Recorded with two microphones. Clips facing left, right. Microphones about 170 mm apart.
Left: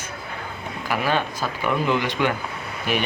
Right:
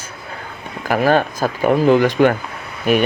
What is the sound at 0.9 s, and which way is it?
Speech, 45° right (ahead or behind).